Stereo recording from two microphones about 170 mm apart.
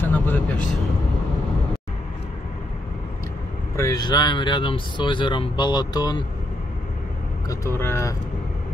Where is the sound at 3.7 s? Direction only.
20° left (ahead or behind).